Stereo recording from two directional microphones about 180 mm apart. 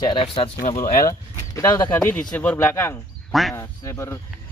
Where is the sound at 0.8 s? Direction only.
50° left (ahead or behind).